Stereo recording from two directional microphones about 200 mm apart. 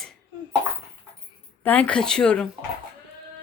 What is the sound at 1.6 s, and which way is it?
Speech, 5° left (ahead or behind).